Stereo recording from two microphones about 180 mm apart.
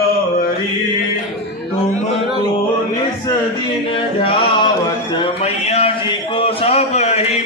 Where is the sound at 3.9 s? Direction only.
30° left (ahead or behind).